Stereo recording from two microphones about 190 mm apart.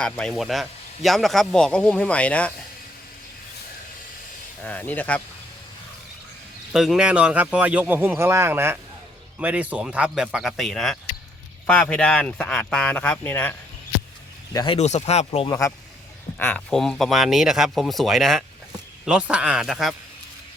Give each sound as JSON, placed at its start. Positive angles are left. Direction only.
{"t": 0.0, "sound": "speech", "side_deg": 5}
{"t": 4.6, "sound": "speech", "side_deg": 10}
{"t": 6.7, "sound": "speech", "side_deg": 0}
{"t": 14.5, "sound": "speech", "side_deg": 25}
{"t": 14.8, "sound": "speech", "side_deg": 35}
{"t": 16.4, "sound": "speech", "side_deg": 5}